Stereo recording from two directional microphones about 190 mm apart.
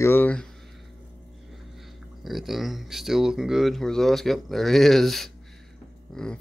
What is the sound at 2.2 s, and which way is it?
Speech, centre (ahead or behind).